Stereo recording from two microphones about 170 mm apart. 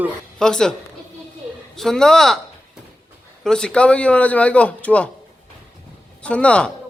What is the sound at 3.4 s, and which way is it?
A man's voice, 5° left (ahead or behind).